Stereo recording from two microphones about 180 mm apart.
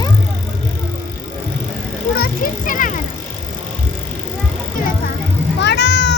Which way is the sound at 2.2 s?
50° left (ahead or behind).